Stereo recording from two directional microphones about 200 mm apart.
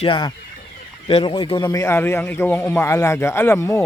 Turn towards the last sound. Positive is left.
turn(degrees=10)  # may be behind; listen again after turning